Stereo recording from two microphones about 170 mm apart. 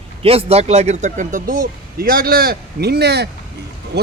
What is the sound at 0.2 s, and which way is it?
A man's voice, 35° right (ahead or behind).